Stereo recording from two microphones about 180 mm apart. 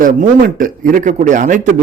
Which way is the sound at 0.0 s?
50° right (ahead or behind).